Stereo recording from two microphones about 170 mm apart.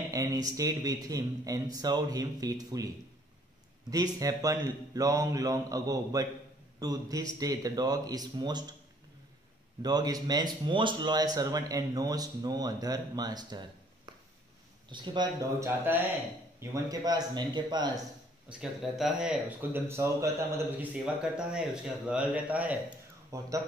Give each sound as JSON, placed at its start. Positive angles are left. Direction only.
{"t": 0.1, "sound": "a man's voice", "side_deg": -20}
{"t": 3.9, "sound": "a man's voice", "side_deg": -20}
{"t": 9.8, "sound": "a man's voice", "side_deg": -25}
{"t": 15.6, "sound": "a man's voice", "side_deg": -10}
{"t": 18.5, "sound": "speech", "side_deg": -5}
{"t": 19.9, "sound": "a man's voice", "side_deg": -15}